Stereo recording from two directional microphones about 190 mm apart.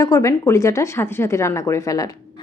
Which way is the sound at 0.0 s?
15° left (ahead or behind).